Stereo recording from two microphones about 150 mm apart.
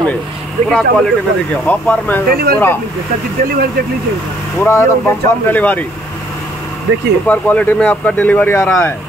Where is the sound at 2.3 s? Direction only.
90° right.